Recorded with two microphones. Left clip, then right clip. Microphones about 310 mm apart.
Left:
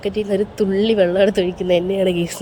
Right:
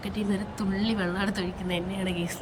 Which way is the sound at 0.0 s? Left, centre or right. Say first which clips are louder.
Left 13 dB; centre.